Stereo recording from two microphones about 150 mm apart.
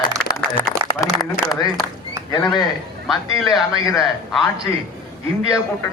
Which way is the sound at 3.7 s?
25° left (ahead or behind).